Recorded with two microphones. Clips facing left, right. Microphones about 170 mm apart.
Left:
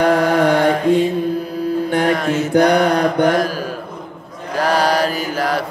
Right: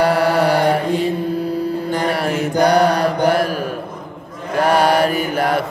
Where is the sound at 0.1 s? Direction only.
35° right (ahead or behind).